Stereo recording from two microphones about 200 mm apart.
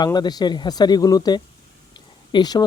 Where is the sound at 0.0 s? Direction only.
20° left (ahead or behind).